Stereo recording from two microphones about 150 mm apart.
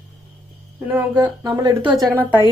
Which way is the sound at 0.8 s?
10° right (ahead or behind).